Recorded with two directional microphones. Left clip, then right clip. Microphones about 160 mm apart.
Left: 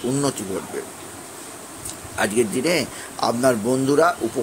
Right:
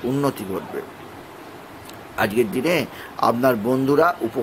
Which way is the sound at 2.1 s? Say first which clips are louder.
Right 1 dB; centre (ahead or behind).